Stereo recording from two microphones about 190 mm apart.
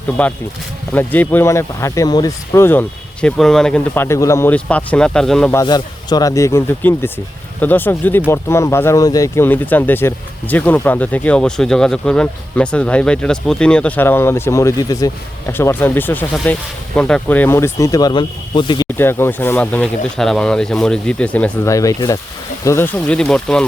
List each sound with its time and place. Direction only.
0.2 s speech: 5° left (ahead or behind)
5.5 s speech: 20° left (ahead or behind)
18.9 s speech: 10° left (ahead or behind)